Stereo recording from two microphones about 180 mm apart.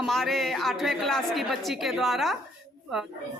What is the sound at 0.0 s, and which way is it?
A woman's voice, centre (ahead or behind).